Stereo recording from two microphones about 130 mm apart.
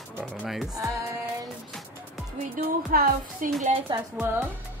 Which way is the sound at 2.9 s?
90° right.